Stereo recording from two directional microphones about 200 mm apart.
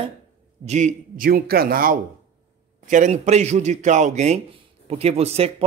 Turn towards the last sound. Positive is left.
turn(degrees=-30)  # may be behind; listen again after turning